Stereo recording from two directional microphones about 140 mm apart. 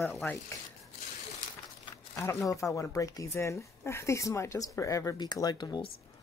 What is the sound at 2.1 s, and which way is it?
Speech, 20° left (ahead or behind).